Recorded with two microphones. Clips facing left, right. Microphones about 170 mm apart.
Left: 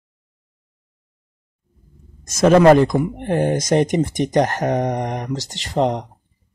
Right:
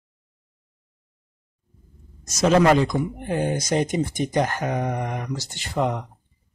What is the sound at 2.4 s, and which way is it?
Speech, 50° left (ahead or behind).